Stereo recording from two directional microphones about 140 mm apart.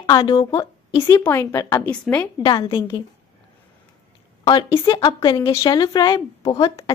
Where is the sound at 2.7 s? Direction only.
35° left (ahead or behind).